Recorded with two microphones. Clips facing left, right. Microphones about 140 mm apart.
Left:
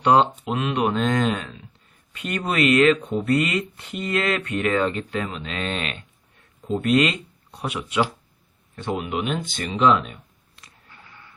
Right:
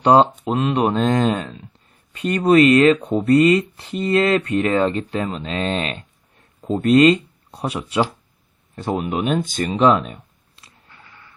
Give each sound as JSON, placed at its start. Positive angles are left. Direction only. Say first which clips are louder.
{"t": 0.0, "sound": "speech", "louder": "right 4 dB", "side_deg": -35}